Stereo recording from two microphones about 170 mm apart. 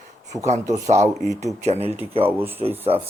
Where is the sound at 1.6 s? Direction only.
40° right (ahead or behind).